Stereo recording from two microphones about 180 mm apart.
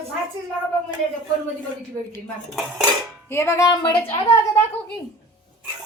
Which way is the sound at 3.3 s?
15° left (ahead or behind).